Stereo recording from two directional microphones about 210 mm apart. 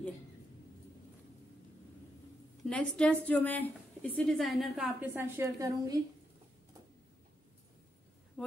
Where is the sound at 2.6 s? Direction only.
5° left (ahead or behind); by 6.0 s 15° right (ahead or behind).